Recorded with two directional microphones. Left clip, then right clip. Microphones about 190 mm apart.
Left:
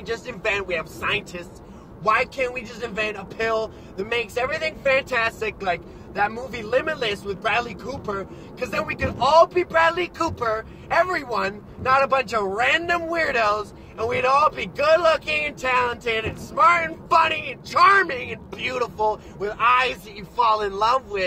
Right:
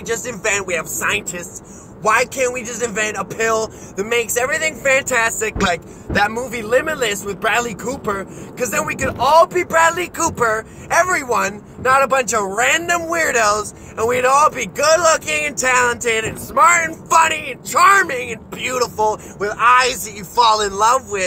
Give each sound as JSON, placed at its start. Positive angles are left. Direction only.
{"t": 0.0, "sound": "speech", "side_deg": -15}